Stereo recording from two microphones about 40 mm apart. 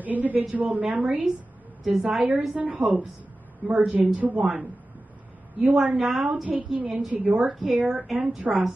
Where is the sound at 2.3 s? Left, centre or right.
Right.